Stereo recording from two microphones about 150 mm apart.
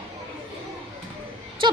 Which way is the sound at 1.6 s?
35° right (ahead or behind).